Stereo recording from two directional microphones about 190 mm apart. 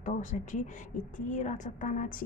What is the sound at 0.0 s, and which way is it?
A woman's voice, 40° left (ahead or behind).